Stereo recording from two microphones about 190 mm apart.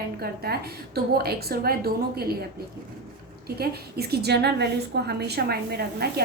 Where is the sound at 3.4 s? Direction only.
55° right (ahead or behind).